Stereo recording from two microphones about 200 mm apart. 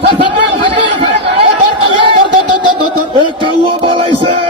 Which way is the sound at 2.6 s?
25° left (ahead or behind).